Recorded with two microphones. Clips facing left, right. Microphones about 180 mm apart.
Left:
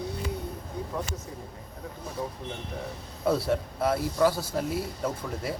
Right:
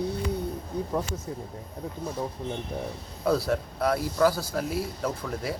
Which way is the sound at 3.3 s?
25° left (ahead or behind).